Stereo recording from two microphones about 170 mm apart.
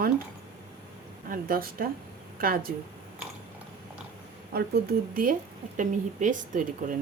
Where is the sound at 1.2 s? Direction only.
60° right (ahead or behind).